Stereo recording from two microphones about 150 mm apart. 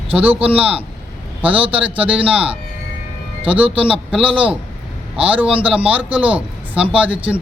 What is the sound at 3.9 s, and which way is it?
A man's voice, 5° right (ahead or behind).